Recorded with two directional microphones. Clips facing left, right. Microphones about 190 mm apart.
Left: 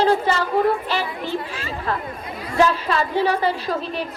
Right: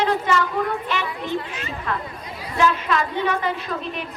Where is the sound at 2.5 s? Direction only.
35° left (ahead or behind).